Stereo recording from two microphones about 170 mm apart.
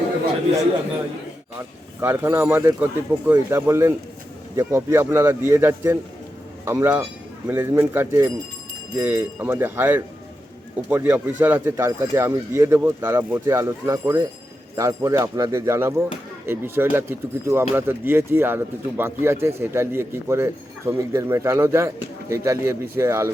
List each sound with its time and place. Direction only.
2.0 s speech: 15° right (ahead or behind)